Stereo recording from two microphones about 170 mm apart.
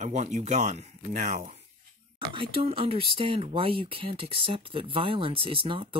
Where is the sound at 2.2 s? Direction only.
30° right (ahead or behind).